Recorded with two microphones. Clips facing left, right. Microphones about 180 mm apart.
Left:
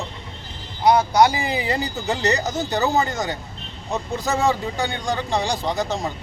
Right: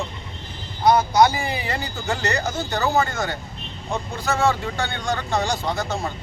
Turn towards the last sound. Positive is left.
turn(degrees=15)  # may be behind; listen again after turning